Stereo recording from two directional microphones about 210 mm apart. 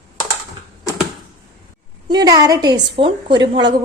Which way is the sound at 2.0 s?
20° right (ahead or behind).